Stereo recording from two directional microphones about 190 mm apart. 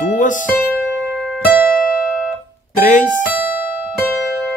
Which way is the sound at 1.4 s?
10° right (ahead or behind).